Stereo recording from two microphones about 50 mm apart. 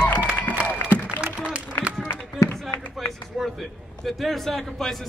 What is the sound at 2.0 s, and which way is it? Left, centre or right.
Music, left.